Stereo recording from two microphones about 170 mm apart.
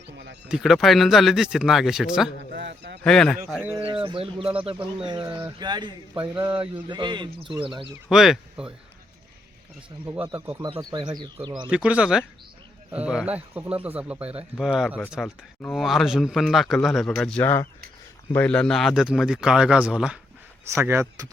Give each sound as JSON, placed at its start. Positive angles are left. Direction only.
{"t": 0.4, "sound": "a man's voice", "side_deg": 0}
{"t": 2.5, "sound": "speech", "side_deg": -85}
{"t": 3.0, "sound": "a man's voice", "side_deg": 5}
{"t": 3.8, "sound": "speech", "side_deg": -30}
{"t": 8.1, "sound": "a man's voice", "side_deg": -5}
{"t": 10.2, "sound": "speech", "side_deg": -15}
{"t": 11.7, "sound": "a man's voice", "side_deg": -5}
{"t": 20.7, "sound": "speech", "side_deg": -15}